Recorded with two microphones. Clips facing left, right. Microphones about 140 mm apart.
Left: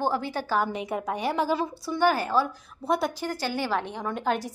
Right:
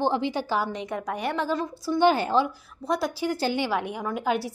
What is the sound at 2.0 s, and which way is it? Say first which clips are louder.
A woman's voice: right 2 dB; 25° right (ahead or behind).